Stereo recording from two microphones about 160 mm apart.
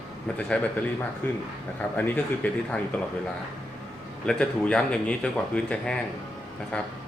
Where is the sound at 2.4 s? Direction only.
10° left (ahead or behind).